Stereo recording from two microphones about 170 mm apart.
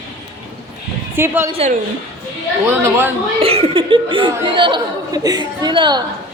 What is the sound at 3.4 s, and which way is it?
Speech, 35° right (ahead or behind).